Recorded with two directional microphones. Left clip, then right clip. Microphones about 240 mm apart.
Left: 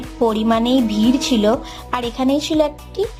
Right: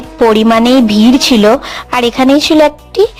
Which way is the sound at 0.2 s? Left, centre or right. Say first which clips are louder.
Right 10 dB; right.